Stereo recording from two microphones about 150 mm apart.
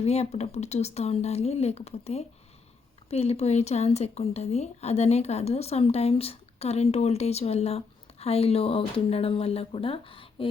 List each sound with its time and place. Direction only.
0.0 s speech: 45° left (ahead or behind)